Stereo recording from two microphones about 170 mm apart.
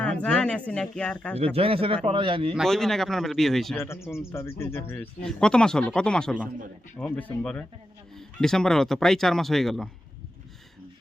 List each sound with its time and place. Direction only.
0.0 s speech: 10° left (ahead or behind)
1.5 s speech: 35° right (ahead or behind)
2.6 s speech: 5° left (ahead or behind)
3.8 s speech: 15° left (ahead or behind)